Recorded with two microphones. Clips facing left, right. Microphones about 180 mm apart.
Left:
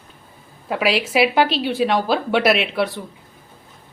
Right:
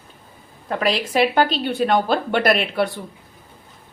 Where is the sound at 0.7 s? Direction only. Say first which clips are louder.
Left 1 dB; 5° left (ahead or behind).